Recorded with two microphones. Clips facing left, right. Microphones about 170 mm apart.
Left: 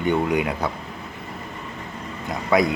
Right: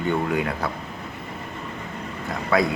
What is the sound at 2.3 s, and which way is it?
Speech, 15° left (ahead or behind).